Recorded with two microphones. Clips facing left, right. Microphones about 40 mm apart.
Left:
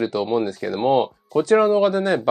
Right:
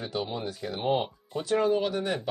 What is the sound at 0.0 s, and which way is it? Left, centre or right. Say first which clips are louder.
Speech: left 11 dB; left.